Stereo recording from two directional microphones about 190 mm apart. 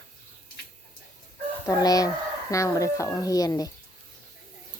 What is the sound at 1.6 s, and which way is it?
Speech, 20° left (ahead or behind).